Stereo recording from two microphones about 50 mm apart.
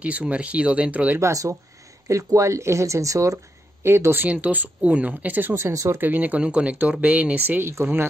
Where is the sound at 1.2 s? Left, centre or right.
Right.